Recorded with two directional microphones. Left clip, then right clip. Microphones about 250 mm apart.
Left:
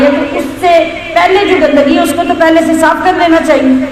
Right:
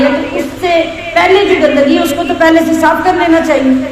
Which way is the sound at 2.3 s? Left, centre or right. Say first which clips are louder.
Even; centre.